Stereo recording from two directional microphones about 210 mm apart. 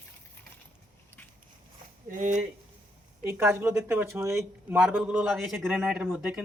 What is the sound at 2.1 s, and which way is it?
Speech, 35° right (ahead or behind).